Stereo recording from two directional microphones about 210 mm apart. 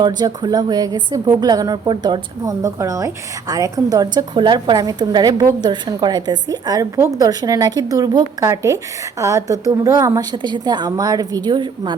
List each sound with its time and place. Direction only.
0.0 s a woman's voice: 20° right (ahead or behind)